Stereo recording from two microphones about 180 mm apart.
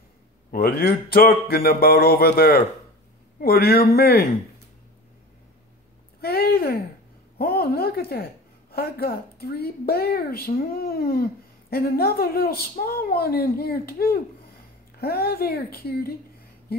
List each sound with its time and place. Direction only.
0.5 s speech: 60° left (ahead or behind)
6.2 s a sound: 60° left (ahead or behind)
7.3 s speech: 55° left (ahead or behind)